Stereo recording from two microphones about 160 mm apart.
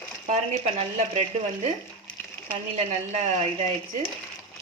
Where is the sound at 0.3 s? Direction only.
45° right (ahead or behind).